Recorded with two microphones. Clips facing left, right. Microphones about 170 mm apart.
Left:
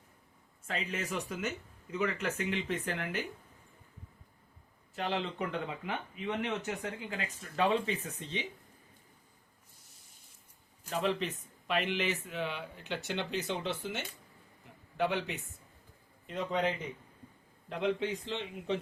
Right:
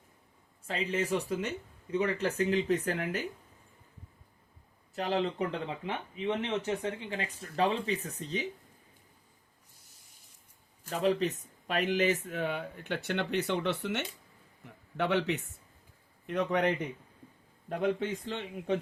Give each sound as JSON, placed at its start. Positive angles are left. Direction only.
{"t": 0.7, "sound": "speech", "side_deg": -30}
{"t": 4.9, "sound": "speech", "side_deg": -35}
{"t": 10.8, "sound": "a man's voice", "side_deg": -40}
{"t": 17.7, "sound": "speech", "side_deg": -50}